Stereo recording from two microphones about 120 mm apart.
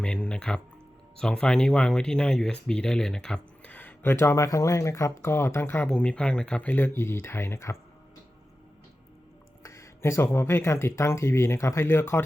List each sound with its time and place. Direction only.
0.0 s speech: 10° left (ahead or behind)
9.6 s speech: 25° left (ahead or behind)